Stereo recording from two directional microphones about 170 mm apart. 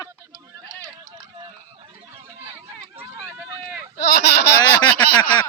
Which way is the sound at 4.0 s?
75° left (ahead or behind).